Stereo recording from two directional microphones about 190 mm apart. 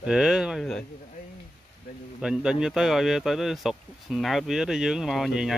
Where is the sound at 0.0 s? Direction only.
5° right (ahead or behind).